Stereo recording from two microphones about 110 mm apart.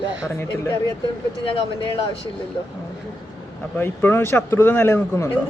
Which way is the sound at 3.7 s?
20° left (ahead or behind).